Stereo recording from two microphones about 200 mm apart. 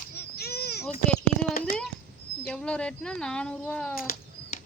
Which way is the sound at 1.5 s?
45° left (ahead or behind).